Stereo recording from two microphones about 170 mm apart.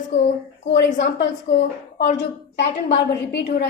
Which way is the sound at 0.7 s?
90° left.